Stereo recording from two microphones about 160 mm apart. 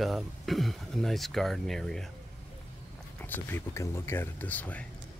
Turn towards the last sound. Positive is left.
turn(degrees=10)  # may be behind; listen again after turning